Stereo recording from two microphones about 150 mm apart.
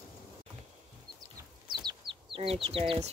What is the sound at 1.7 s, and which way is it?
Chicken, 30° right (ahead or behind).